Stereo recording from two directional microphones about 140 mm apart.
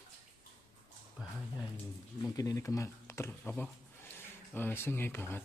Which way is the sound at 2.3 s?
25° left (ahead or behind).